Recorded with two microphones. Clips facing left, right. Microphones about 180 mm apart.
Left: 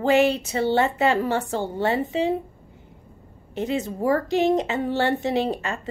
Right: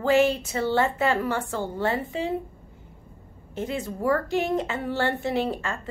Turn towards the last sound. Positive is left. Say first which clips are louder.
# left 2 dB
turn(degrees=20)  # may be behind; listen again after turning